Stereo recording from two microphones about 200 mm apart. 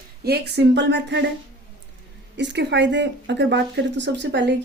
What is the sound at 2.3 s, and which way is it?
A woman's voice, 60° right (ahead or behind).